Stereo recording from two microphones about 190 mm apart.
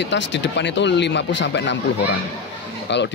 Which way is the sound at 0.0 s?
70° left (ahead or behind).